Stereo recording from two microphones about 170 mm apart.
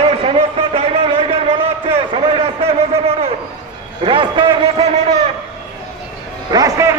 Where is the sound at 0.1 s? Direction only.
35° right (ahead or behind).